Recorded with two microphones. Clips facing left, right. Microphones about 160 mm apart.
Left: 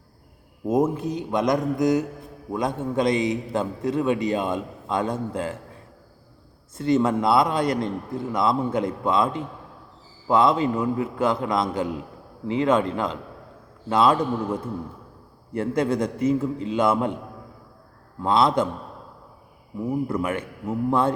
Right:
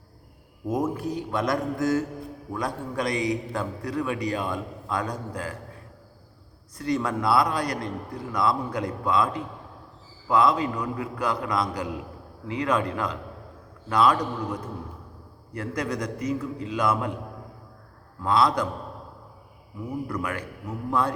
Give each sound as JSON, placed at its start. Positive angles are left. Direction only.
{"t": 0.7, "sound": "a man's voice", "side_deg": 20}
{"t": 6.7, "sound": "a man's voice", "side_deg": 25}
{"t": 18.2, "sound": "a man's voice", "side_deg": 25}
{"t": 20.1, "sound": "a man's voice", "side_deg": 25}